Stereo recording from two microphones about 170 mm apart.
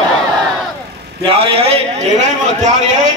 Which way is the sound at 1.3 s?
35° right (ahead or behind).